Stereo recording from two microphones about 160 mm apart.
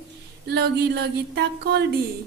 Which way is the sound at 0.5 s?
85° right.